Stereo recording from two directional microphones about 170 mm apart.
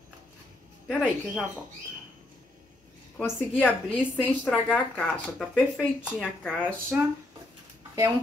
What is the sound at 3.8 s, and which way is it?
A woman's voice, 5° right (ahead or behind).